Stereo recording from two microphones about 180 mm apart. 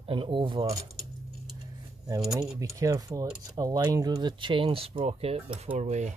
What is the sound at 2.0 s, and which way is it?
Speech, 20° right (ahead or behind).